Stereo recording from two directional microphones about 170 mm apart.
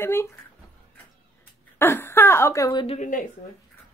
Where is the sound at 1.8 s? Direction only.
10° left (ahead or behind).